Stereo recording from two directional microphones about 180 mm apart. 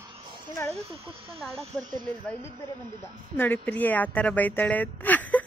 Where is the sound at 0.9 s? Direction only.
30° right (ahead or behind).